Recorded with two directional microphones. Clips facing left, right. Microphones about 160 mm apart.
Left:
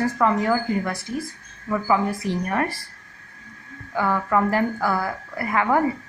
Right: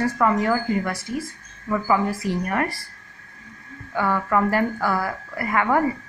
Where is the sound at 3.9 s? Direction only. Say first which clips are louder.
Even; centre (ahead or behind).